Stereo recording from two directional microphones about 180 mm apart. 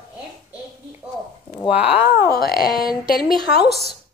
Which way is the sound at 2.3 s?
55° left (ahead or behind).